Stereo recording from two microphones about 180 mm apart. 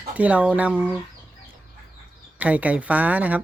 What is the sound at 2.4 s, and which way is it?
Speech, 10° right (ahead or behind).